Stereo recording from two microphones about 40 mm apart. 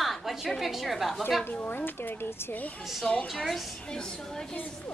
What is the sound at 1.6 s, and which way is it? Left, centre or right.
Speech, left.